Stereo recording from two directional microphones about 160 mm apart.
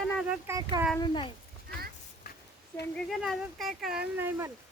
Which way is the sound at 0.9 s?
30° left (ahead or behind).